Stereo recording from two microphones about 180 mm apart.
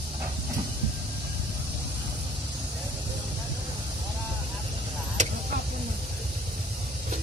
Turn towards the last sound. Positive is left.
turn(degrees=-40)  # may be behind; listen again after turning